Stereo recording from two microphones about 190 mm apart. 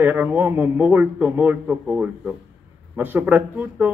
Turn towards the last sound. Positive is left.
turn(degrees=-10)  # may be behind; listen again after turning